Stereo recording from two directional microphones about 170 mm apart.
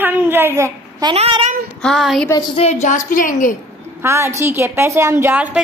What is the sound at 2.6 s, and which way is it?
Speech, 40° left (ahead or behind).